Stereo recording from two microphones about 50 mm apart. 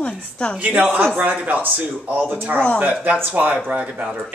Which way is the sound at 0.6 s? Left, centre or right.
Right.